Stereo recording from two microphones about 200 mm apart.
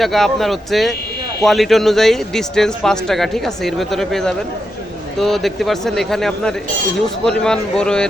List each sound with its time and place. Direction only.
0.0 s a man's voice: centre (ahead or behind)